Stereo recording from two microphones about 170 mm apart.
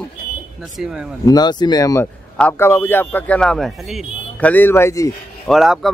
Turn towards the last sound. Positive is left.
turn(degrees=0)  # may be behind; listen again after turning